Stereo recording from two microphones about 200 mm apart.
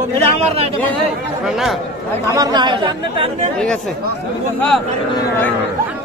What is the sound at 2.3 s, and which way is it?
Speech, 20° right (ahead or behind).